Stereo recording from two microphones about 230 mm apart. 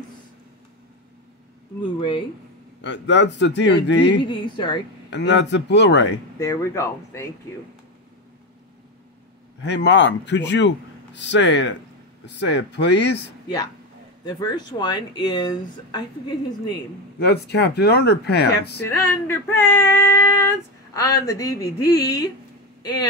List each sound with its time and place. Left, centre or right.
2.0 s speech: left
2.8 s speech: left
4.3 s speech: left
5.1 s speech: left
6.4 s female singing: centre
9.7 s speech: left
14.2 s speech: centre
17.2 s speech: left
18.9 s female singing: centre